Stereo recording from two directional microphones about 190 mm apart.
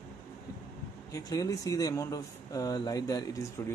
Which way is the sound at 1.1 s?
20° left (ahead or behind).